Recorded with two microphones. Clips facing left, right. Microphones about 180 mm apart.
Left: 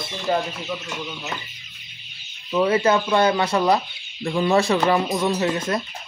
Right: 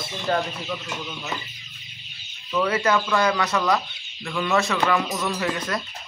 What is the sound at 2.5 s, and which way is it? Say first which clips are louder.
Speech: left 3 dB; 30° left (ahead or behind).